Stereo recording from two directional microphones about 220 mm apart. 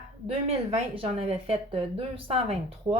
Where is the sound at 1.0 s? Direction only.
25° right (ahead or behind).